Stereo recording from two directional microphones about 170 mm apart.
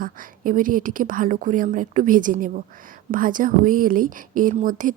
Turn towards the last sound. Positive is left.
turn(degrees=-50)  # may be behind; listen again after turning